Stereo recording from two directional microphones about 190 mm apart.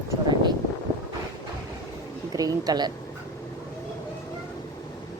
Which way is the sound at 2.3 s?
20° right (ahead or behind).